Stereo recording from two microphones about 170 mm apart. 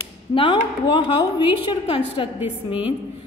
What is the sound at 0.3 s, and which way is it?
A woman's voice, 30° left (ahead or behind).